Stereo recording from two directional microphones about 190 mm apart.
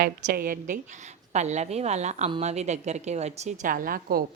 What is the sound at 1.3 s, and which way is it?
A woman's voice, 35° right (ahead or behind).